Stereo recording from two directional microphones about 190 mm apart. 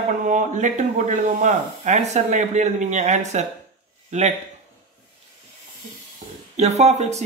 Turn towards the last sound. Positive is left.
turn(degrees=-35)  # may be behind; listen again after turning